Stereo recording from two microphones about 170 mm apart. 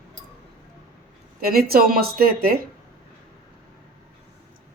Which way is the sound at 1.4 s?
60° right (ahead or behind).